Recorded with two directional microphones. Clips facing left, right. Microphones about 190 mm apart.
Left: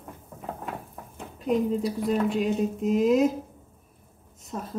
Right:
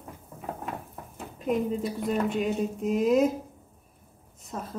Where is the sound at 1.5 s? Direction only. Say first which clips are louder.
Left 3 dB; centre (ahead or behind).